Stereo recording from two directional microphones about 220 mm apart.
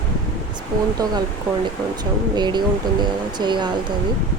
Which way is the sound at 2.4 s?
20° right (ahead or behind).